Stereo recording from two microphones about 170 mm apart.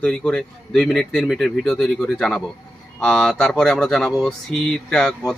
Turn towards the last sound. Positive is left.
turn(degrees=5)  # may be behind; listen again after turning